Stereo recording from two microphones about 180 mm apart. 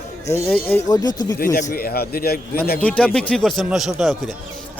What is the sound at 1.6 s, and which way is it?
Speech, 50° left (ahead or behind).